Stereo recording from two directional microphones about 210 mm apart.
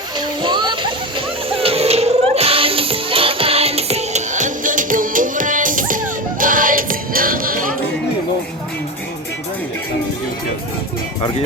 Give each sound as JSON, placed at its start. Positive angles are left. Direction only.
{"t": 0.2, "sound": "music", "side_deg": -20}